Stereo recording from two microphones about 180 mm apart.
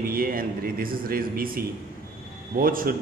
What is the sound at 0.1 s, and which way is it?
A man's voice, 55° right (ahead or behind).